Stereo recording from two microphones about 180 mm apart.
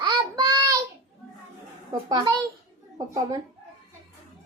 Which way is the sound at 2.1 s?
20° right (ahead or behind).